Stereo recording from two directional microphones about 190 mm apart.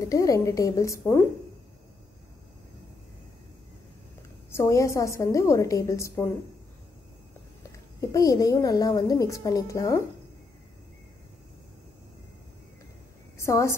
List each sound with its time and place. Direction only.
0.0 s a woman's voice: 15° left (ahead or behind)
4.5 s a woman's voice: 15° left (ahead or behind)
8.0 s a woman's voice: 15° left (ahead or behind)
13.4 s a woman's voice: 15° left (ahead or behind)